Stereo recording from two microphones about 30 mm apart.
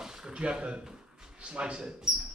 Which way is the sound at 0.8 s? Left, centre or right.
Right.